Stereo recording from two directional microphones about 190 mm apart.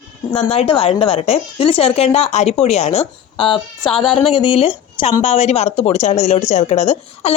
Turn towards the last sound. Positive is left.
turn(degrees=35)  # may be behind; listen again after turning